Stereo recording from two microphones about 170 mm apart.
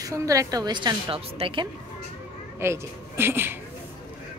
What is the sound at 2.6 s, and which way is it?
Speech, 15° right (ahead or behind).